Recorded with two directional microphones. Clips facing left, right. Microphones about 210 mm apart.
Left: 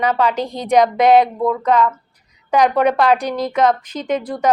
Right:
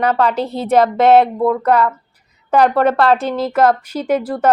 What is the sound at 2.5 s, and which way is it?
Speech, 10° left (ahead or behind).